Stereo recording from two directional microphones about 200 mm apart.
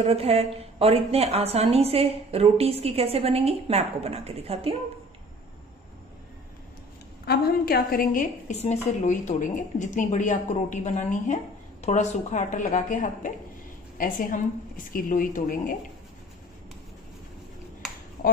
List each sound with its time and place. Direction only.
0.0 s a woman's voice: 30° right (ahead or behind)
7.2 s a woman's voice: 50° left (ahead or behind)